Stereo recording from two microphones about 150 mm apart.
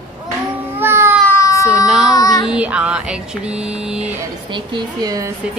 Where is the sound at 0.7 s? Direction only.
15° right (ahead or behind).